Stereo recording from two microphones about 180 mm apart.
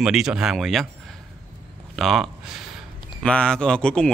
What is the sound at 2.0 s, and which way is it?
A man's voice, centre (ahead or behind).